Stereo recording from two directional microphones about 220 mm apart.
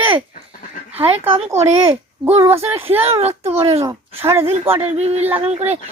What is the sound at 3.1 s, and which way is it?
Speech, 30° right (ahead or behind).